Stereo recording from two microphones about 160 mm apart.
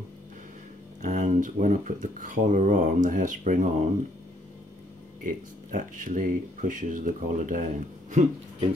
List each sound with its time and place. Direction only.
1.0 s speech: 50° right (ahead or behind)
5.2 s speech: 55° right (ahead or behind)